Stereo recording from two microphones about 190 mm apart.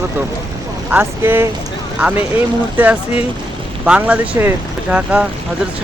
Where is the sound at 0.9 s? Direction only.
10° right (ahead or behind).